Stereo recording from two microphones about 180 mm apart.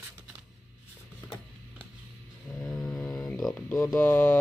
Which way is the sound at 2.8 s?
Centre (ahead or behind).